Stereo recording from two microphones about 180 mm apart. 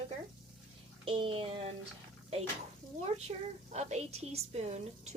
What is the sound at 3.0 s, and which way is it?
A woman's voice, 35° right (ahead or behind).